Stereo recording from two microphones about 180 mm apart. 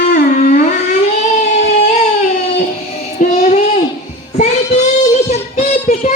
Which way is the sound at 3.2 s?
45° left (ahead or behind).